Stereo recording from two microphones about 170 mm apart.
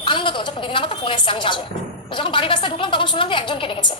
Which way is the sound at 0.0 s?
30° left (ahead or behind).